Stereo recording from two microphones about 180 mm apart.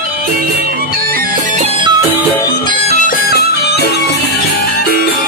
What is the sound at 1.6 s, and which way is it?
Music, 30° right (ahead or behind).